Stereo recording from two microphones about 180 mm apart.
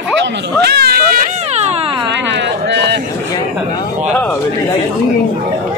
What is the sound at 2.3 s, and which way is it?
Speech, 75° right (ahead or behind).